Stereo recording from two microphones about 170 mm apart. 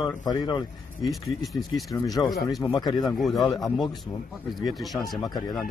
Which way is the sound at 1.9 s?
20° left (ahead or behind).